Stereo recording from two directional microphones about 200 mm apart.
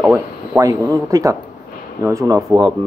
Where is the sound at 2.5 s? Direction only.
5° right (ahead or behind).